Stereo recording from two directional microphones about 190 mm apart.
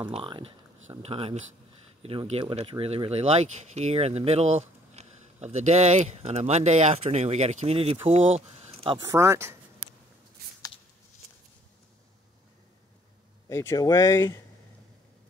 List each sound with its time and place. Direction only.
0.1 s speech: 30° right (ahead or behind)
9.0 s speech: 15° right (ahead or behind)
13.5 s speech: 15° left (ahead or behind)